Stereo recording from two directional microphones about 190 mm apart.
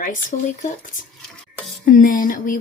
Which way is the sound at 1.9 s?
45° left (ahead or behind).